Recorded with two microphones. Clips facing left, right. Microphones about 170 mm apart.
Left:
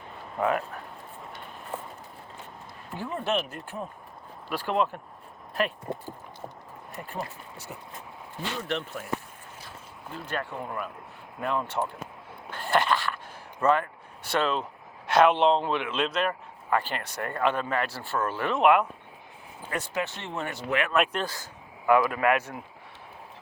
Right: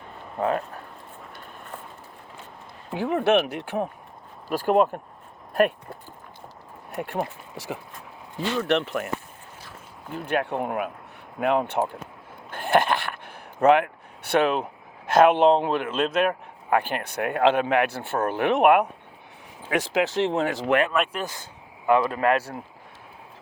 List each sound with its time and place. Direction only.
0.3 s speech: 30° right (ahead or behind)
2.9 s speech: 80° right
4.4 s speech: 45° right (ahead or behind)
5.9 s speech: 35° left (ahead or behind)
6.9 s speech: 70° right (ahead or behind)
7.5 s speech: 90° right
8.4 s speech: 70° right (ahead or behind)
10.2 s speech: 65° right (ahead or behind)
12.5 s speech: 55° right (ahead or behind)
19.7 s speech: 90° right
20.9 s speech: centre (ahead or behind)
21.8 s speech: 30° right (ahead or behind)